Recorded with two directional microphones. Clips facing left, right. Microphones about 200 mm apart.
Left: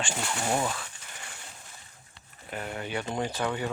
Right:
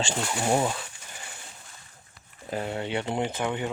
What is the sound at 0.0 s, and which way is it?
Speech, 25° right (ahead or behind).